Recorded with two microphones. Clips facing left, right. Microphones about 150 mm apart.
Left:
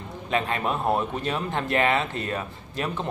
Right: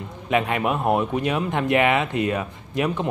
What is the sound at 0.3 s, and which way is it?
Speech, 15° right (ahead or behind).